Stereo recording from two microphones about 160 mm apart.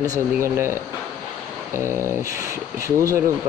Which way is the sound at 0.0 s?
20° right (ahead or behind).